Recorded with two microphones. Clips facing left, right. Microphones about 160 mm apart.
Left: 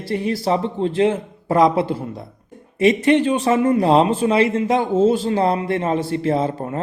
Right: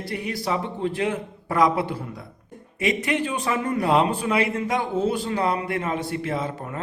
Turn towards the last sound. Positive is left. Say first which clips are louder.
# left 7 dB
turn(degrees=30)  # may be behind; listen again after turning